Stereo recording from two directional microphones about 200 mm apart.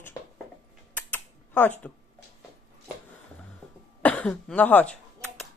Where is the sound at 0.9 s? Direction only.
10° left (ahead or behind).